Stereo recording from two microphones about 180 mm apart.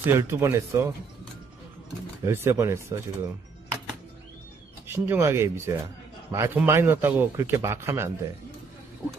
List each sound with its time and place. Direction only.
0.0 s speech: 15° right (ahead or behind)
2.2 s speech: 15° right (ahead or behind)
4.8 s speech: 10° right (ahead or behind)